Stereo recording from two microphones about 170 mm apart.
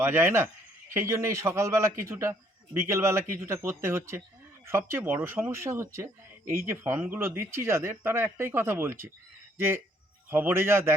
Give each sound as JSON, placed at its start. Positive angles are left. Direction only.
{"t": 0.0, "sound": "speech", "side_deg": -15}